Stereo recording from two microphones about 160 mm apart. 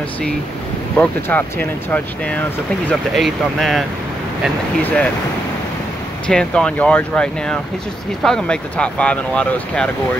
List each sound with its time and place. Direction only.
0.9 s speech: 10° left (ahead or behind)
4.8 s speech: 10° left (ahead or behind)
6.2 s speech: 5° left (ahead or behind)